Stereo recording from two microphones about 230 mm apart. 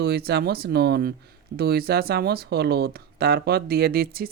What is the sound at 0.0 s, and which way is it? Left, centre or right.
Speech, right.